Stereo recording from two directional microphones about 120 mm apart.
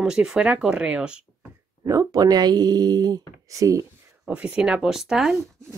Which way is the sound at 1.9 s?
30° right (ahead or behind).